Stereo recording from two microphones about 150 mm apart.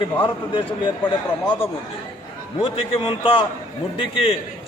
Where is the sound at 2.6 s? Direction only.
35° left (ahead or behind).